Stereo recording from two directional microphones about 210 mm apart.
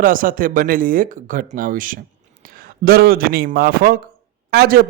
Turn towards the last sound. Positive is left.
turn(degrees=-45)  # may be behind; listen again after turning